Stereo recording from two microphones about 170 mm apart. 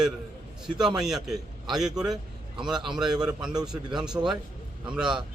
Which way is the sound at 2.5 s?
5° right (ahead or behind).